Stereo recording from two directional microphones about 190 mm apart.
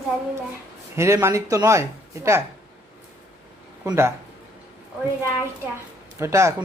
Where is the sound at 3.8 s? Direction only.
15° right (ahead or behind).